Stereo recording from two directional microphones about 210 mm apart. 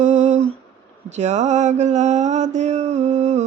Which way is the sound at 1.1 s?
35° right (ahead or behind).